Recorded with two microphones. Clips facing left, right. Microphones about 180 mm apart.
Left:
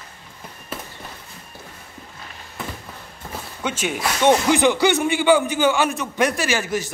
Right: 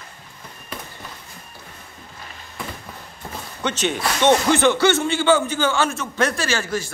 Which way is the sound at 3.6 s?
10° left (ahead or behind).